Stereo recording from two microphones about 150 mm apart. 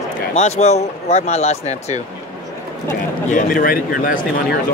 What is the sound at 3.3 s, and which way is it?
Speech, 65° left (ahead or behind).